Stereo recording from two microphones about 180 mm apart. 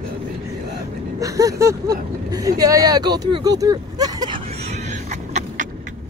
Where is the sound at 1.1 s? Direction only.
20° right (ahead or behind).